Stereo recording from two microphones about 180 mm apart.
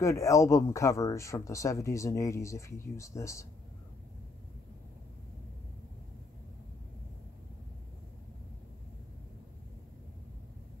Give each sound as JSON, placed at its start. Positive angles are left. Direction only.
{"t": 0.0, "sound": "speech", "side_deg": 15}